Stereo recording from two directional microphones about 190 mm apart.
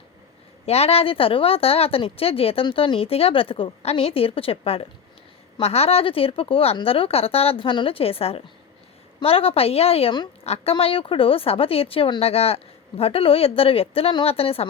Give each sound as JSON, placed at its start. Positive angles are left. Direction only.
{"t": 0.6, "sound": "a woman's voice", "side_deg": 30}